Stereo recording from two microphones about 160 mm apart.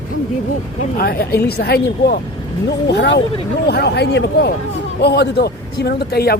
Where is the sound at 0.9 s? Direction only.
70° left (ahead or behind).